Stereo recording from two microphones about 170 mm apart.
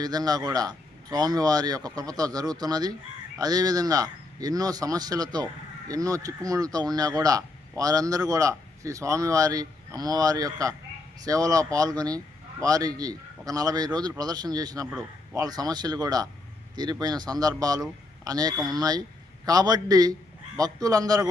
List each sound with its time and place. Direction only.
0.0 s speech: 25° right (ahead or behind)